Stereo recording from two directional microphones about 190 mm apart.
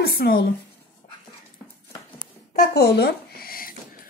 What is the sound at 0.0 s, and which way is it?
Speech, 55° left (ahead or behind).